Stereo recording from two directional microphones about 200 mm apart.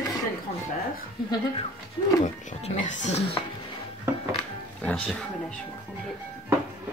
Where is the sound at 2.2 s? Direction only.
35° left (ahead or behind).